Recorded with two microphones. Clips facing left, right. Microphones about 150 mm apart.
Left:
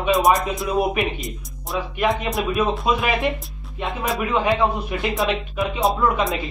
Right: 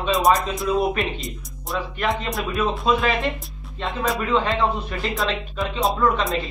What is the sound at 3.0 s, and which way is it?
Speech, 15° left (ahead or behind).